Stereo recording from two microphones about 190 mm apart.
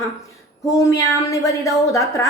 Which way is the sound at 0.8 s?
15° left (ahead or behind).